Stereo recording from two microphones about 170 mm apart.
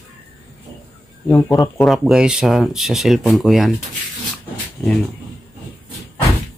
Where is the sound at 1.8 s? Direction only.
Centre (ahead or behind).